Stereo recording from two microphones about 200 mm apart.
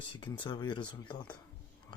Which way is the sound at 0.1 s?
25° left (ahead or behind).